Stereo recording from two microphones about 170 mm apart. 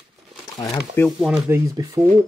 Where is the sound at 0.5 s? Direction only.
20° left (ahead or behind).